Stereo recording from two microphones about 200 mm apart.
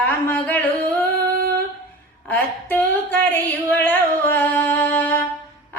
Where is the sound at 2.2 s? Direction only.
10° left (ahead or behind).